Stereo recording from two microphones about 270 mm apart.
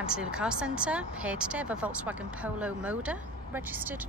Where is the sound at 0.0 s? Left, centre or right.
Centre.